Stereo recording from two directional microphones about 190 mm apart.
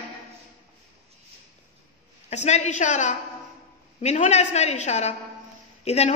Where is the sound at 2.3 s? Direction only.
35° left (ahead or behind).